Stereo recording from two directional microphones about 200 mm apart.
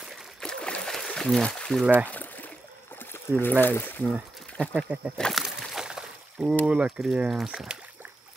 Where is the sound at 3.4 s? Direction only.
10° left (ahead or behind).